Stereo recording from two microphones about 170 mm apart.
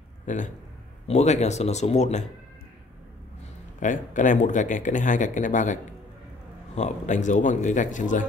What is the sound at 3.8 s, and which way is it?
A man's voice, 50° left (ahead or behind).